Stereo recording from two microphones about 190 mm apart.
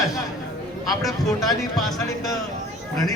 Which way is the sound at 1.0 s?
Centre (ahead or behind).